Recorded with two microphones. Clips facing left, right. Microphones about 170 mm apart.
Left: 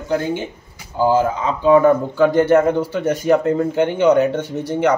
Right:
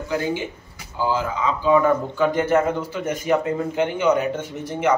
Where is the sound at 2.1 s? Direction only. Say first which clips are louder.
Left 6 dB; 65° left (ahead or behind).